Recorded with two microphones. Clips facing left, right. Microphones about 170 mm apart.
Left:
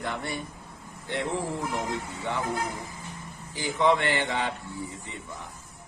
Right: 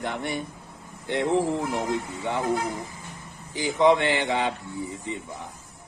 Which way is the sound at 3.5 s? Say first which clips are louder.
Right 4 dB; 20° right (ahead or behind).